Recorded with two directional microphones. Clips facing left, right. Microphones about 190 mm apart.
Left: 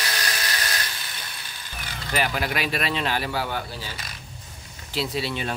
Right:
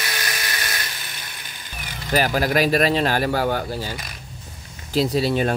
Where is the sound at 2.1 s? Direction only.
40° right (ahead or behind).